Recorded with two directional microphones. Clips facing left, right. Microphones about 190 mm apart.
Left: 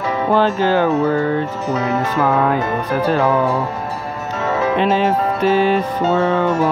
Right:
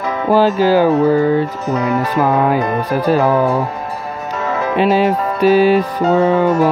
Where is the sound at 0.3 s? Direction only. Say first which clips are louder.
Right 4 dB; 10° right (ahead or behind).